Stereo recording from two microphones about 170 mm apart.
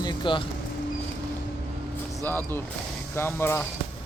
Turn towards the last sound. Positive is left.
turn(degrees=15)  # may be behind; listen again after turning